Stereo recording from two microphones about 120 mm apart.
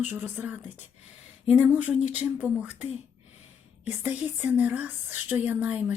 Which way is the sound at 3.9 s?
15° right (ahead or behind).